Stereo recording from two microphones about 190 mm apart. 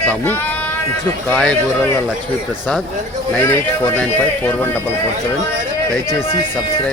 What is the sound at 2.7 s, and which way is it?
Speech, 5° left (ahead or behind).